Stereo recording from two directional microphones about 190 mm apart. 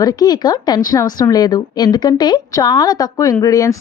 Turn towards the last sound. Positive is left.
turn(degrees=20)  # may be behind; listen again after turning